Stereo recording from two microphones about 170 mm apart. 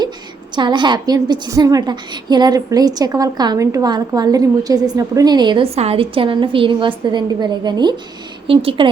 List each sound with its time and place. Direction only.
0.5 s a woman's voice: 25° right (ahead or behind)